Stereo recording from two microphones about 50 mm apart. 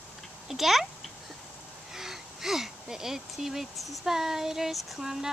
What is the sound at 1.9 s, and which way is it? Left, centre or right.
Female singing, centre.